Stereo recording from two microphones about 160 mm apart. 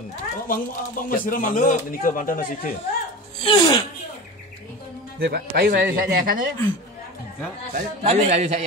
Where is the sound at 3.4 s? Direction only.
30° left (ahead or behind).